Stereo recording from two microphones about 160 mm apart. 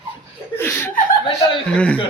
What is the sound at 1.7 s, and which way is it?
Speech, 5° left (ahead or behind).